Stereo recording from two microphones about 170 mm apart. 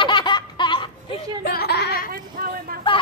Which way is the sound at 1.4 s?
65° left (ahead or behind).